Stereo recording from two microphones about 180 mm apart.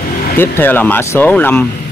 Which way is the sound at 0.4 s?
10° left (ahead or behind).